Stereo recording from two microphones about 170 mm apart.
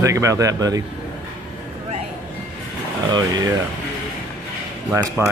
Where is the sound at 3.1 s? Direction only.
20° right (ahead or behind).